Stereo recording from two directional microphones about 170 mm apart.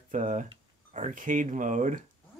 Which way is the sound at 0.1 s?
45° right (ahead or behind).